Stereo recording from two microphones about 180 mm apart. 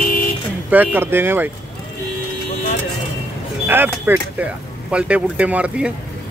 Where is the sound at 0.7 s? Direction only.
10° right (ahead or behind).